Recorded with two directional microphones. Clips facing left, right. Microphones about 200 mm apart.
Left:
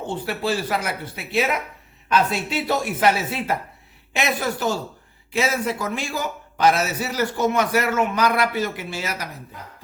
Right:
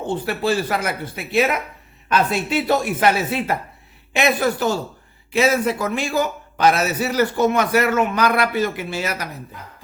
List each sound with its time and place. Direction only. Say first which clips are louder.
0.3 s a man's voice: right 2 dB; 50° right (ahead or behind)